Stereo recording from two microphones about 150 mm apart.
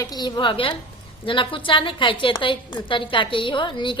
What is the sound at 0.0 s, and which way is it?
A woman's voice, 25° left (ahead or behind).